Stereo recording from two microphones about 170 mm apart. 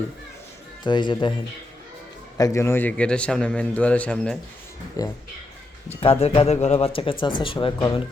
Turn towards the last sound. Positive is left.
turn(degrees=25)  # may be behind; listen again after turning